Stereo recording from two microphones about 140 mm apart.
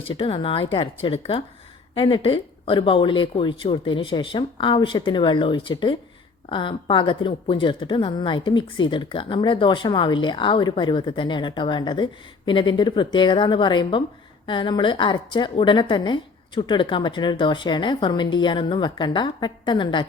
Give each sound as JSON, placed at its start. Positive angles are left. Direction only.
{"t": 0.1, "sound": "a woman's voice", "side_deg": 35}